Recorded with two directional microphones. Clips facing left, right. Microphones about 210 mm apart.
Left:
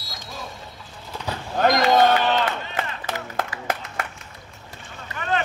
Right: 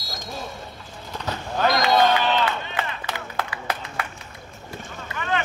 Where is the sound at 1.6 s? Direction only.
45° left (ahead or behind).